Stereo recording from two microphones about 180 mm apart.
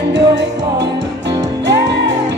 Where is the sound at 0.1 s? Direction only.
75° right (ahead or behind).